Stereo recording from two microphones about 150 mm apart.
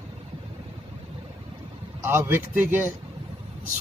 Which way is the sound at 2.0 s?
15° right (ahead or behind).